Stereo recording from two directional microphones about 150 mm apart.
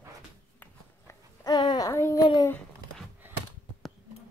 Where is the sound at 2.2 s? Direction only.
25° left (ahead or behind).